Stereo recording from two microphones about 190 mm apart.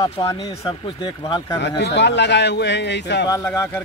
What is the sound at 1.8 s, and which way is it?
Speech, 65° left (ahead or behind).